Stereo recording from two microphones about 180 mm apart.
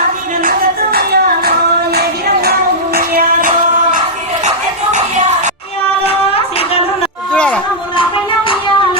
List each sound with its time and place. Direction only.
0.9 s music: 55° right (ahead or behind)
4.4 s music: 40° right (ahead or behind)
7.3 s a sound: 5° left (ahead or behind)